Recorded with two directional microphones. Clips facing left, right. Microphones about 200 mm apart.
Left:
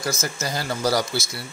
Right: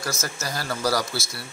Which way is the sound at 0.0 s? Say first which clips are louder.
Left 3 dB; 20° left (ahead or behind).